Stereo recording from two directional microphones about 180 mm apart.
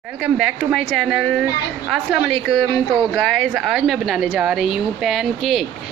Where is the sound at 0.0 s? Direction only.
5° right (ahead or behind).